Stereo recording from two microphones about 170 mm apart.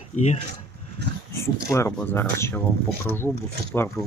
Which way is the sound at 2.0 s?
15° left (ahead or behind).